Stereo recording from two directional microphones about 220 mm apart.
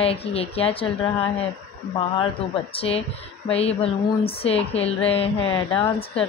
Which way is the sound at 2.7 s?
25° left (ahead or behind).